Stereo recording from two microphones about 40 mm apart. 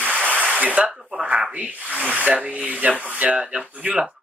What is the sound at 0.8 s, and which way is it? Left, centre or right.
Speech, centre.